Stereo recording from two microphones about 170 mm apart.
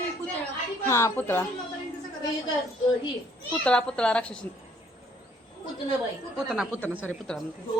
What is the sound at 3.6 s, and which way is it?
Speech, 5° left (ahead or behind).